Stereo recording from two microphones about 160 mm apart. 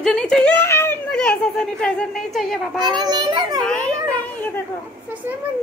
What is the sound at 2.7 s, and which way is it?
Speech, 25° right (ahead or behind).